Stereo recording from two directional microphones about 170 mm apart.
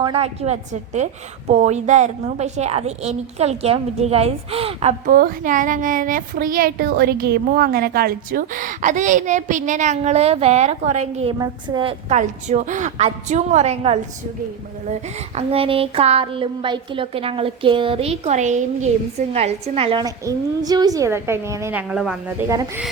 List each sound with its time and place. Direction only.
0.0 s a woman's voice: 35° right (ahead or behind)
5.0 s speech: 55° right (ahead or behind); by 11.3 s 35° right (ahead or behind)
11.3 s a woman's voice: 25° right (ahead or behind)
12.1 s speech: 45° right (ahead or behind)
15.4 s a woman's voice: 35° right (ahead or behind); by 22.4 s 5° right (ahead or behind)
22.4 s a woman's voice: 20° right (ahead or behind)